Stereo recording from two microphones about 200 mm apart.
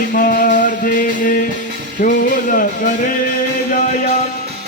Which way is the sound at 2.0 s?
45° left (ahead or behind).